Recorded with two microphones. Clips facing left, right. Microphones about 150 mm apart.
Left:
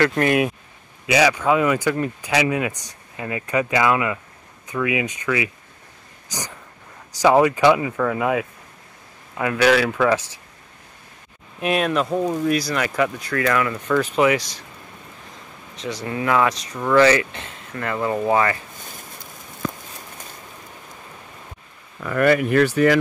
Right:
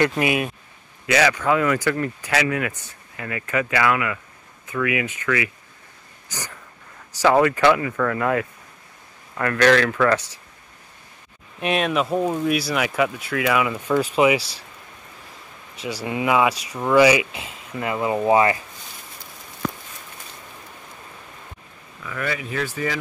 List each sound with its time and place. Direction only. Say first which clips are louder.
0.0 s speech: left 2 dB; 10° right (ahead or behind)
1.0 s speech: left 2 dB; 10° left (ahead or behind)
11.6 s speech: left 1 dB; centre (ahead or behind)
15.7 s speech: even; 10° right (ahead or behind)
22.0 s speech: left 11 dB; 55° left (ahead or behind)